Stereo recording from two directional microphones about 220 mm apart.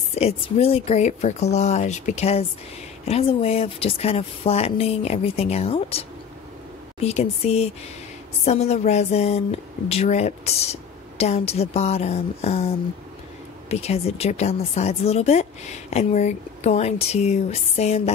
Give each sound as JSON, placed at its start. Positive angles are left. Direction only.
{"t": 0.1, "sound": "a woman's voice", "side_deg": 30}
{"t": 13.7, "sound": "a woman's voice", "side_deg": 30}